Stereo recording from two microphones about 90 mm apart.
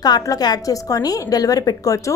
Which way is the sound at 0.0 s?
45° left (ahead or behind).